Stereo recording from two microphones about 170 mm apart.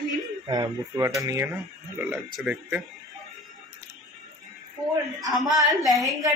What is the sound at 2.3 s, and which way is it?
Speech, 5° right (ahead or behind).